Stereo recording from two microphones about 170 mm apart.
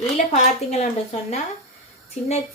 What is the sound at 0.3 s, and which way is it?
A woman's voice, 40° left (ahead or behind).